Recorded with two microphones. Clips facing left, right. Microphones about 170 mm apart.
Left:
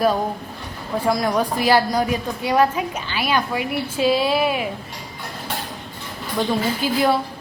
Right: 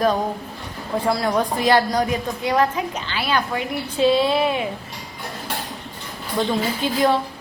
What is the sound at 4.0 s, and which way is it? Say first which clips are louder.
Female singing: right 2 dB; 25° right (ahead or behind).